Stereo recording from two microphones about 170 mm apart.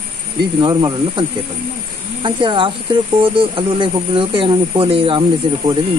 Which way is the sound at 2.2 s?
30° right (ahead or behind).